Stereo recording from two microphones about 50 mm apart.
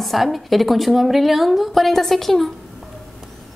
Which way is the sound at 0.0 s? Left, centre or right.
Centre.